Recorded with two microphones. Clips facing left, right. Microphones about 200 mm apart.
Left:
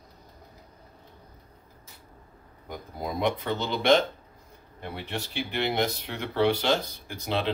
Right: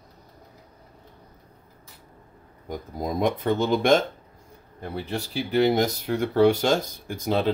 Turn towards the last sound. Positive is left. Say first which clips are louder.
# right 5 dB
turn(degrees=-45)  # may be behind; listen again after turning